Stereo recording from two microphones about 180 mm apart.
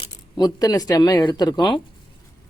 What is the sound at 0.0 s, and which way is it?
Speech, 25° left (ahead or behind).